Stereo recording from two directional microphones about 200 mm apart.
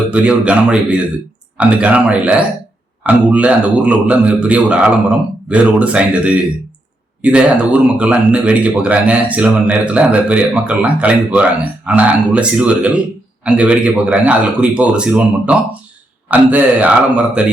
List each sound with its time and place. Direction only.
0.1 s a man's voice: 5° right (ahead or behind)